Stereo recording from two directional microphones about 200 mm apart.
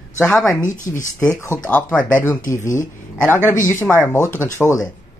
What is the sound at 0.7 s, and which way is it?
Speech, 40° left (ahead or behind).